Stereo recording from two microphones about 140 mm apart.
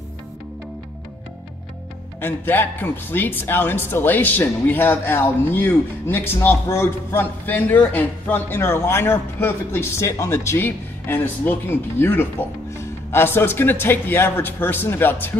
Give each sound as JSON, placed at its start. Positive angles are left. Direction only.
{"t": 2.1, "sound": "speech", "side_deg": 15}